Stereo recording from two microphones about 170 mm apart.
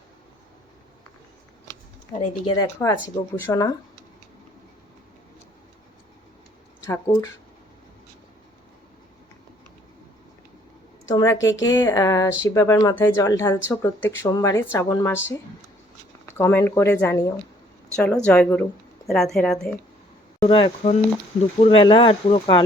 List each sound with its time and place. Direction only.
2.1 s speech: 30° left (ahead or behind)
6.8 s speech: 20° left (ahead or behind)
11.1 s speech: 15° left (ahead or behind)
11.3 s a woman's voice: 90° left
11.6 s a woman's voice: 20° left (ahead or behind); by 19.7 s 5° left (ahead or behind)
20.4 s speech: 30° left (ahead or behind)